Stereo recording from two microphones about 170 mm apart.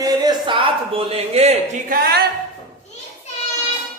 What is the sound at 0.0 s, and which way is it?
Speech, 25° right (ahead or behind).